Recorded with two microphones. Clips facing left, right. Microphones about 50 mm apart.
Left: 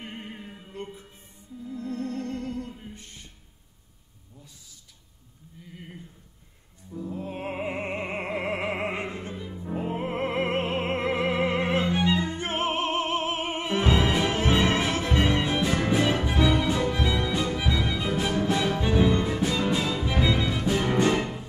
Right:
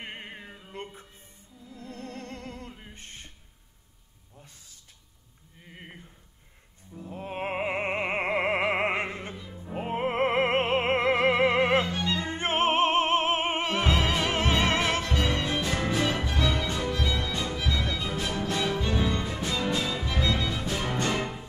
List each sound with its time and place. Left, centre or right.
0.0 s music: right
1.7 s music: left
2.0 s music: right
5.6 s a sound: right
7.1 s music: right
11.8 s music: left
12.2 s music: right
13.8 s music: left
14.2 s music: right
15.1 s music: left